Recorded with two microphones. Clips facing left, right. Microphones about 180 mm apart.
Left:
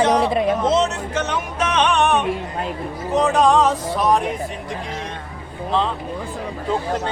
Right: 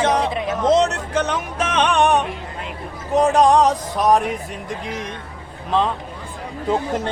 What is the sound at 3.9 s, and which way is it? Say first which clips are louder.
Speech: right 2 dB; 45° right (ahead or behind).